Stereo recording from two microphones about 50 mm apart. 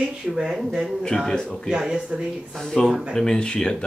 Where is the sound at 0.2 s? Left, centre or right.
Centre.